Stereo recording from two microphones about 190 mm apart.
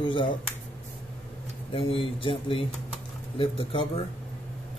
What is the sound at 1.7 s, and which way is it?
Speech, 30° left (ahead or behind).